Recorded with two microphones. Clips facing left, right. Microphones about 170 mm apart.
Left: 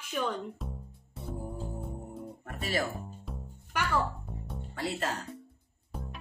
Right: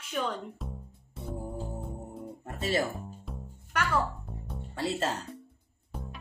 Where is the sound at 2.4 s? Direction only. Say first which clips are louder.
Right 4 dB; 25° right (ahead or behind).